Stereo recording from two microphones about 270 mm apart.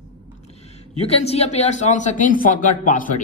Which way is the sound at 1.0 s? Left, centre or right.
Left.